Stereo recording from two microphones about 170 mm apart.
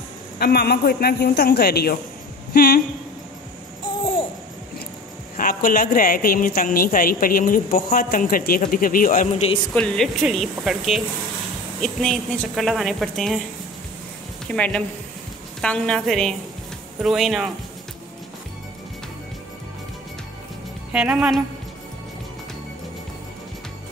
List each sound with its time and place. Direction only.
0.4 s a man's voice: 70° left (ahead or behind)
5.4 s a woman's voice: 55° left (ahead or behind); by 9.6 s 40° left (ahead or behind)
9.8 s a woman's voice: 5° left (ahead or behind)
14.5 s a woman's voice: 5° left (ahead or behind)
20.9 s a woman's voice: 5° right (ahead or behind)